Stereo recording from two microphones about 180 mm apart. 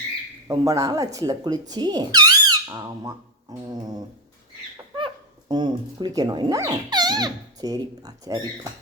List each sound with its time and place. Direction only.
0.4 s speech: 20° right (ahead or behind)
4.9 s speech: 25° right (ahead or behind)